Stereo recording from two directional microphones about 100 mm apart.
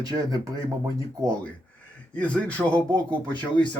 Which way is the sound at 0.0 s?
40° right (ahead or behind).